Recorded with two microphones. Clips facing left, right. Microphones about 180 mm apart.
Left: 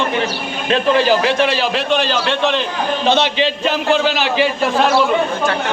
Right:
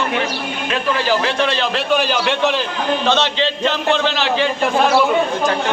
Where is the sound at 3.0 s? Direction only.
15° left (ahead or behind).